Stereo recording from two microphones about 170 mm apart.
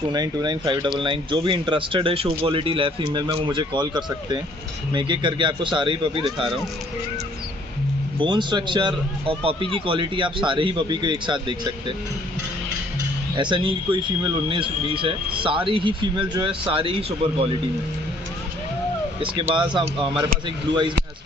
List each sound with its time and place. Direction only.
0.1 s a man's voice: 25° right (ahead or behind)
6.3 s speech: centre (ahead or behind)
8.2 s a man's voice: 25° right (ahead or behind)
13.4 s a man's voice: 30° right (ahead or behind)
19.1 s a man's voice: 30° right (ahead or behind)